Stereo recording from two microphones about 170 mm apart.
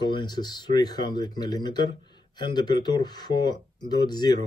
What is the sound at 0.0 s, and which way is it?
Speech, 25° left (ahead or behind).